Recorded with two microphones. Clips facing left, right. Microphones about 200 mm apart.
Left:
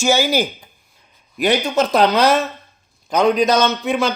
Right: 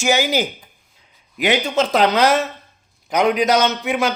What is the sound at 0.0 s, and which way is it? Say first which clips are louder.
Speech: left 2 dB; 20° right (ahead or behind).